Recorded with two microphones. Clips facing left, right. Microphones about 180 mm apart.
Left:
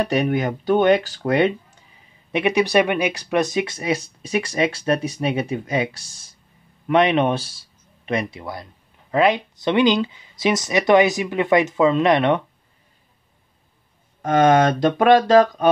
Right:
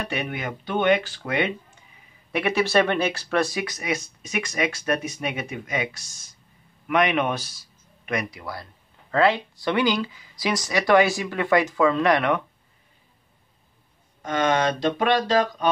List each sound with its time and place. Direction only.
0.0 s speech: 40° left (ahead or behind)
2.3 s speech: 15° left (ahead or behind)
14.2 s speech: 50° left (ahead or behind)